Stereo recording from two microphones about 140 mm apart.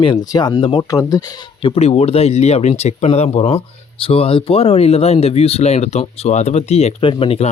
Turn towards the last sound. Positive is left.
turn(degrees=40)  # may be behind; listen again after turning